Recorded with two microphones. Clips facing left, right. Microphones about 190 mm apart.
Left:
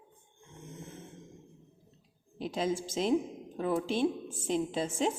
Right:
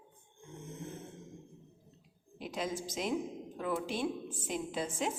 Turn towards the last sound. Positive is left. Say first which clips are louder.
# left 5 dB
turn(degrees=25)  # may be behind; listen again after turning